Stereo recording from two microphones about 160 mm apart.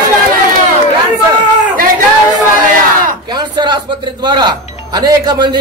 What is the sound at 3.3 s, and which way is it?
A man's voice, 25° right (ahead or behind).